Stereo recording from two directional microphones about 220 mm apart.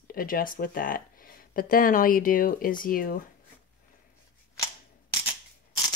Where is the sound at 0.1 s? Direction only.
40° left (ahead or behind).